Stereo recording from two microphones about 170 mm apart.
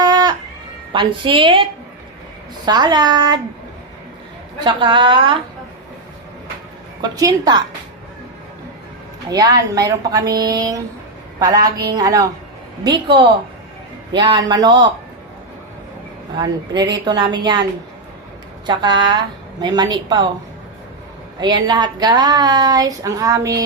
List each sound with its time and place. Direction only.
0.0 s a sound: 25° right (ahead or behind)
0.9 s speech: 30° right (ahead or behind)
2.6 s speech: 25° right (ahead or behind)
4.6 s speech: 30° right (ahead or behind)
7.0 s speech: 20° right (ahead or behind)
9.3 s speech: 25° right (ahead or behind)
16.4 s speech: 25° right (ahead or behind)
18.6 s speech: 25° right (ahead or behind)
21.4 s speech: 25° right (ahead or behind)